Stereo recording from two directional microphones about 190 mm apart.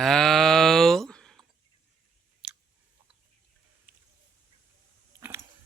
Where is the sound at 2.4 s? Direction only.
5° right (ahead or behind).